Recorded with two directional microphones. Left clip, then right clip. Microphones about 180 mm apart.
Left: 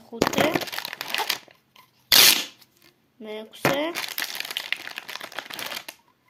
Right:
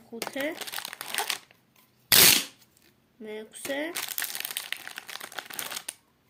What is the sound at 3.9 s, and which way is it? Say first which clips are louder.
Crumpling: left 5 dB; 25° left (ahead or behind).